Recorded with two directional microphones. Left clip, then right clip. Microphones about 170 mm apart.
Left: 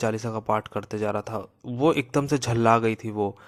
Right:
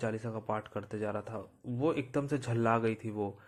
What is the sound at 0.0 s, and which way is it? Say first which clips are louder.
Speech: left 10 dB; 35° left (ahead or behind).